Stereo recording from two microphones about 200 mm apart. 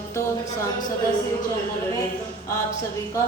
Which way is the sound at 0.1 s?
15° left (ahead or behind).